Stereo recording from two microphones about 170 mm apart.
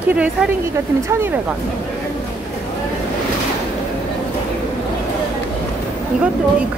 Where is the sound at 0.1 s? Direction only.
5° right (ahead or behind).